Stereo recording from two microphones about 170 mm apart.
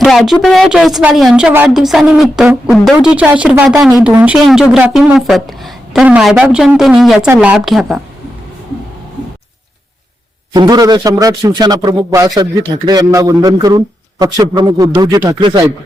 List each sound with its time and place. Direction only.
0.0 s speech: centre (ahead or behind)
10.5 s a man's voice: 25° right (ahead or behind)